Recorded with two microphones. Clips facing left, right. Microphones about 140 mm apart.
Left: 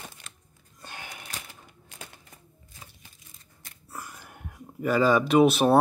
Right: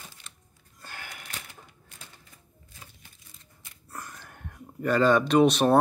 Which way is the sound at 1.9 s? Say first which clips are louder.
Left 7 dB; 90° left.